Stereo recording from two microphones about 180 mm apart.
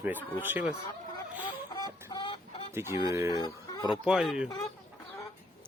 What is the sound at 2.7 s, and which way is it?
Speech, 15° right (ahead or behind).